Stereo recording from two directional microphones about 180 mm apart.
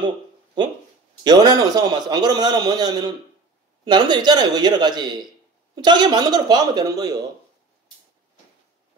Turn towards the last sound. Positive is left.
turn(degrees=-20)  # may be behind; listen again after turning